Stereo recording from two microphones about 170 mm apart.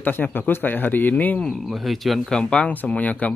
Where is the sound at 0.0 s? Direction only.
10° left (ahead or behind).